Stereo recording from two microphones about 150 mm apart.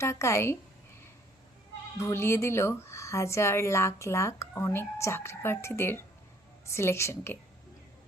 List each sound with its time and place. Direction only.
0.0 s speech: 20° left (ahead or behind)
2.0 s speech: 20° left (ahead or behind)